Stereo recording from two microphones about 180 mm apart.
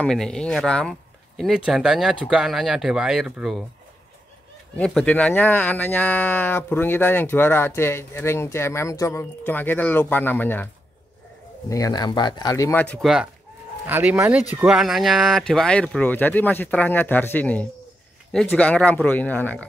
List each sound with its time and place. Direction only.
0.0 s speech: 5° left (ahead or behind)
4.7 s speech: 5° left (ahead or behind)
11.7 s speech: 20° left (ahead or behind)
12.8 s speech: 5° left (ahead or behind)